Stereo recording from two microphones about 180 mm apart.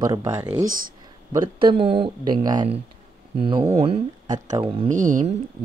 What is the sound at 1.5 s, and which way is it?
Speech, 30° right (ahead or behind).